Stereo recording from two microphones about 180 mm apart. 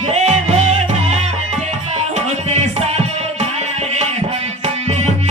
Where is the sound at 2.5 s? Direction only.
40° right (ahead or behind).